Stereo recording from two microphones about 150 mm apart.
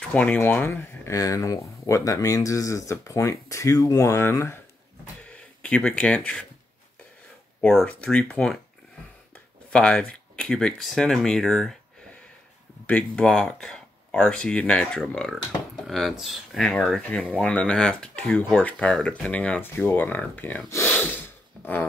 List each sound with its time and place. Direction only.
0.1 s speech: 10° left (ahead or behind)
7.6 s speech: 5° left (ahead or behind)
12.8 s speech: 10° left (ahead or behind)